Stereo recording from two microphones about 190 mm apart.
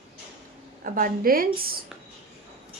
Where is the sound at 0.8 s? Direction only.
45° right (ahead or behind).